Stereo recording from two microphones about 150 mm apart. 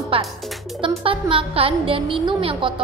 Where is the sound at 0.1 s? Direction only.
35° right (ahead or behind).